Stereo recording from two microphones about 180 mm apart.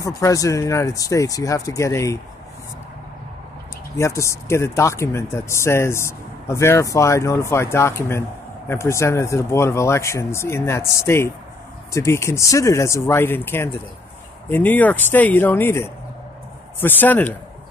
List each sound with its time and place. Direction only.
0.0 s speech: 20° left (ahead or behind)
4.0 s speech: 15° left (ahead or behind)